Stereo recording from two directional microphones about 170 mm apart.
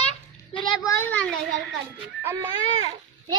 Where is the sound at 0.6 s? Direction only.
25° left (ahead or behind).